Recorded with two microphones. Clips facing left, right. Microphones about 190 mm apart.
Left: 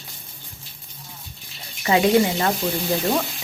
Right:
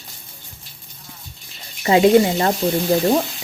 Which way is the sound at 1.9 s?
30° right (ahead or behind).